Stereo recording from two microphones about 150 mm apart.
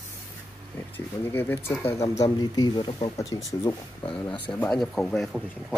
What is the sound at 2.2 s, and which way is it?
Speech, 25° left (ahead or behind).